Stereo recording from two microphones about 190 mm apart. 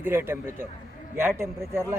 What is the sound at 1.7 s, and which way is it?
Speech, 15° right (ahead or behind).